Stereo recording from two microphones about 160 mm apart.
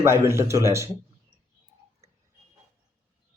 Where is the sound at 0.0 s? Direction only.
15° right (ahead or behind).